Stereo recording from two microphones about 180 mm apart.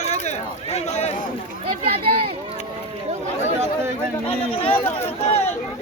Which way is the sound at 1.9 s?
30° right (ahead or behind).